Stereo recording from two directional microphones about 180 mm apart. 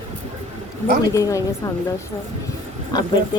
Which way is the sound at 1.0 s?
20° left (ahead or behind).